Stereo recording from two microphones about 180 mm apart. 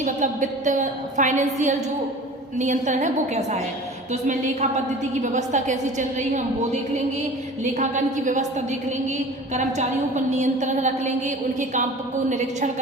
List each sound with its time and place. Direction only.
0.0 s a woman's voice: 45° right (ahead or behind)
7.6 s a woman's voice: 40° right (ahead or behind)